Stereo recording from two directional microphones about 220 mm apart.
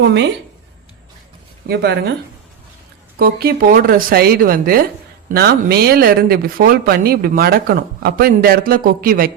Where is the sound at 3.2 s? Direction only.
45° right (ahead or behind).